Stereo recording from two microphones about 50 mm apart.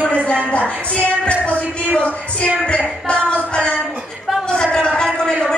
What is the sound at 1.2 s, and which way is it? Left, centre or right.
Music, left.